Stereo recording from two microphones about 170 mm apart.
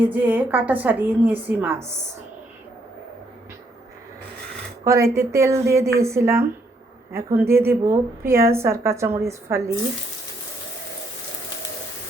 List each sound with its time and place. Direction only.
0.0 s a woman's voice: 10° right (ahead or behind)
4.9 s a woman's voice: 15° right (ahead or behind)